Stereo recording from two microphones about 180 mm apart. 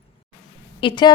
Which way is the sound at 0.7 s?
25° left (ahead or behind).